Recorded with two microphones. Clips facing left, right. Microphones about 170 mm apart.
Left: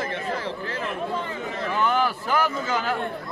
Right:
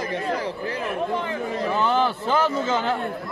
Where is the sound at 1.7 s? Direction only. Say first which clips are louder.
Right 1 dB; 30° right (ahead or behind).